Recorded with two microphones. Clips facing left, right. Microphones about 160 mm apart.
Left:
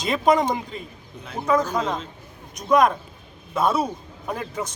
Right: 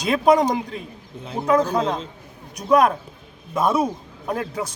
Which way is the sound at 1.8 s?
30° right (ahead or behind).